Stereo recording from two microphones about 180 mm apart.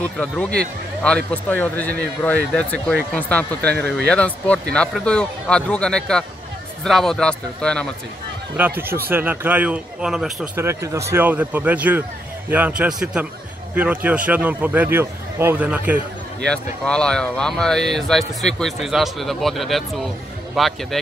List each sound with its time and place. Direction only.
0.0 s speech: 5° left (ahead or behind)
8.5 s speech: 10° right (ahead or behind)
16.4 s speech: 5° left (ahead or behind)